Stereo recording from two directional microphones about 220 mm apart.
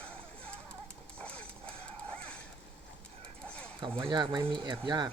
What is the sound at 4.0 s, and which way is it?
Speech, 20° right (ahead or behind).